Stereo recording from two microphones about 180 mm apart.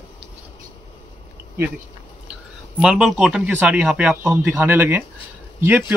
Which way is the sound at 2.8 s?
5° right (ahead or behind).